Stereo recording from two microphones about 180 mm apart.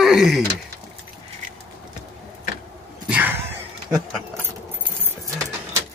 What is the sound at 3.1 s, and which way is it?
Speech, 10° right (ahead or behind).